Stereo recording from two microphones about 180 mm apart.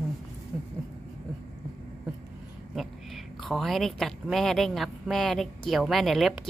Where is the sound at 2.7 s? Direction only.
Centre (ahead or behind).